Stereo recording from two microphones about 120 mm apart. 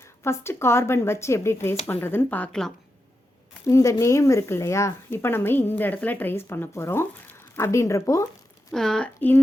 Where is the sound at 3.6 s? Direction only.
25° left (ahead or behind).